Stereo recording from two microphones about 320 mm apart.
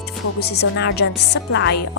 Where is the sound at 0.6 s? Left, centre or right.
Left.